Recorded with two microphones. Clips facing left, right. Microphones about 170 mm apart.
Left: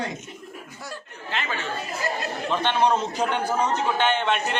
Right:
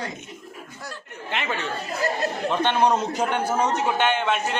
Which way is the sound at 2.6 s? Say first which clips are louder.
Right 1 dB; 10° right (ahead or behind).